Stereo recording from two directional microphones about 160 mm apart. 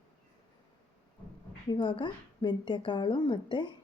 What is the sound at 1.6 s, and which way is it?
A woman's voice, 30° left (ahead or behind).